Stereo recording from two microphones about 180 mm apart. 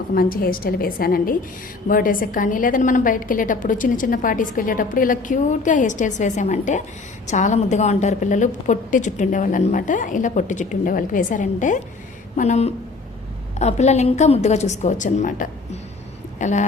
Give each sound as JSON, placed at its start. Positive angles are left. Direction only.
{"t": 0.1, "sound": "a woman's voice", "side_deg": 50}